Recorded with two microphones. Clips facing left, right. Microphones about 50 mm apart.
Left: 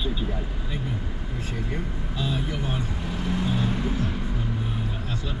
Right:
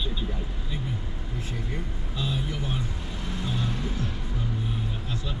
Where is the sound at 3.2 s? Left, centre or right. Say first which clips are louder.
Left 5 dB; left.